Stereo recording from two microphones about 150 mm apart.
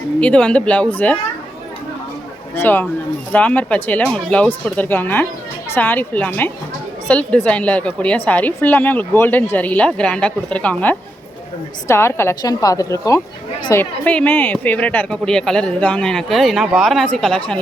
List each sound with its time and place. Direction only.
0.2 s a woman's voice: 5° left (ahead or behind)
2.6 s a woman's voice: 10° left (ahead or behind)
14.0 s speech: 10° left (ahead or behind)